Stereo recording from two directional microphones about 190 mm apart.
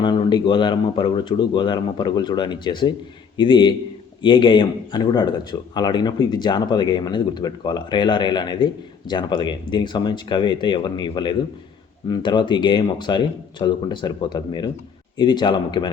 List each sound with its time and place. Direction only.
0.0 s speech: 25° left (ahead or behind)